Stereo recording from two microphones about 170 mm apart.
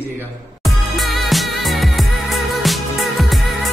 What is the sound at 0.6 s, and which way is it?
Music, centre (ahead or behind).